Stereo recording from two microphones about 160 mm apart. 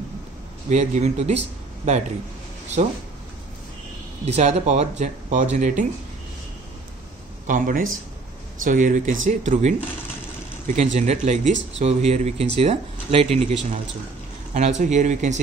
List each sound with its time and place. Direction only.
0.7 s speech: 45° right (ahead or behind)
4.3 s speech: 40° right (ahead or behind)
7.4 s speech: 60° right (ahead or behind)